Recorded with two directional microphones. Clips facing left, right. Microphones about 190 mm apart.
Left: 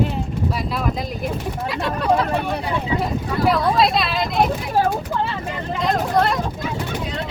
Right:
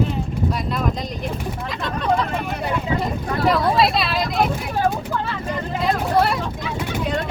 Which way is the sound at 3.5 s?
Centre (ahead or behind).